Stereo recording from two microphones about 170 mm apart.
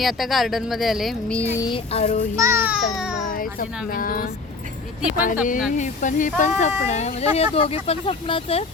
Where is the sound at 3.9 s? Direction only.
55° left (ahead or behind).